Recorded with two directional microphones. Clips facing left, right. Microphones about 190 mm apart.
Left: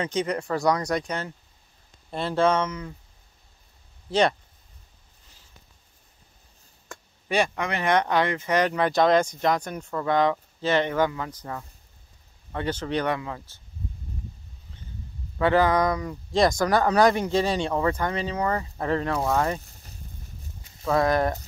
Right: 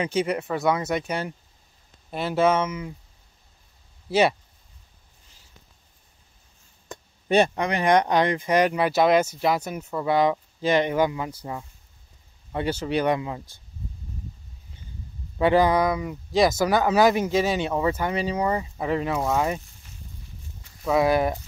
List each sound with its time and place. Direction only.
0.0 s speech: 10° right (ahead or behind)
4.1 s speech: 5° right (ahead or behind)
6.9 s speech: 25° right (ahead or behind)
15.3 s speech: 15° right (ahead or behind)
19.6 s a sound: 40° left (ahead or behind)
20.8 s speech: 5° right (ahead or behind)